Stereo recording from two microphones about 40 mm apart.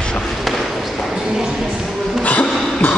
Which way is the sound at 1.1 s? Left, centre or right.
Centre.